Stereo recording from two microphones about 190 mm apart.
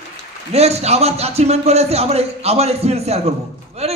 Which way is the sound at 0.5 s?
35° right (ahead or behind).